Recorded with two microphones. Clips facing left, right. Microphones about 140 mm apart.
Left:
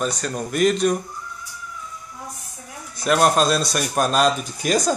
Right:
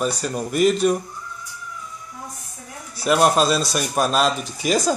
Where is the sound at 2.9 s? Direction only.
5° right (ahead or behind).